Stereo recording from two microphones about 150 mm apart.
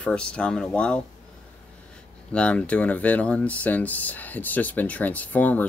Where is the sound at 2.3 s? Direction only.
10° left (ahead or behind).